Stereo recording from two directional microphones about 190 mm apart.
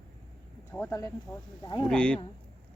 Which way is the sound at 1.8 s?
5° left (ahead or behind).